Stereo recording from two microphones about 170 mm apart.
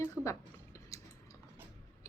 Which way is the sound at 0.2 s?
5° right (ahead or behind).